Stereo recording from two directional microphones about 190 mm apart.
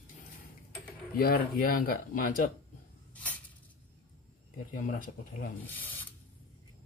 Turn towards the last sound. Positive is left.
turn(degrees=10)  # may be behind; listen again after turning